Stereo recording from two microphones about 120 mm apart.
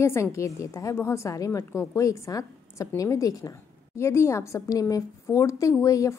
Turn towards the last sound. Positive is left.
turn(degrees=25)  # may be behind; listen again after turning